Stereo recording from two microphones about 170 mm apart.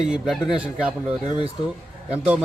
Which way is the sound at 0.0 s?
5° right (ahead or behind).